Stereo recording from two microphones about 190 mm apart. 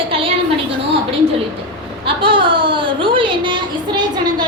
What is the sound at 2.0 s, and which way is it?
Speech, 25° right (ahead or behind).